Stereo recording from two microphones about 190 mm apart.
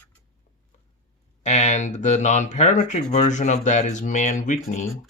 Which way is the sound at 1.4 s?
35° left (ahead or behind).